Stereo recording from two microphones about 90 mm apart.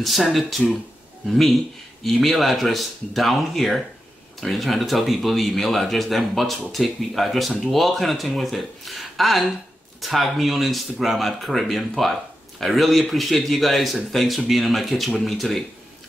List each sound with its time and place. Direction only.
0.0 s speech: centre (ahead or behind)